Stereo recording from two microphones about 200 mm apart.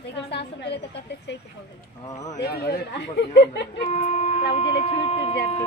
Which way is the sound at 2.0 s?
15° left (ahead or behind).